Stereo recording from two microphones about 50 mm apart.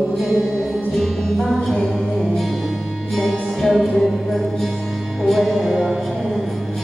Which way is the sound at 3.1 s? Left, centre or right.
Centre.